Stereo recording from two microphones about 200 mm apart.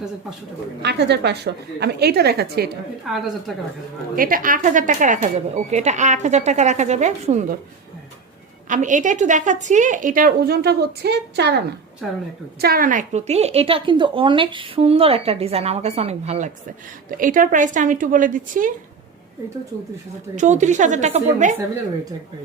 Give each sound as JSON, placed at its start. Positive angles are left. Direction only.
{"t": 0.8, "sound": "a woman's voice", "side_deg": -55}
{"t": 3.1, "sound": "a woman's voice", "side_deg": 0}
{"t": 4.1, "sound": "a woman's voice", "side_deg": -45}
{"t": 8.7, "sound": "a woman's voice", "side_deg": -40}
{"t": 12.6, "sound": "a woman's voice", "side_deg": -45}
{"t": 20.3, "sound": "a woman's voice", "side_deg": -35}